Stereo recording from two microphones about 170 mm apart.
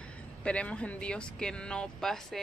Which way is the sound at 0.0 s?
5° left (ahead or behind).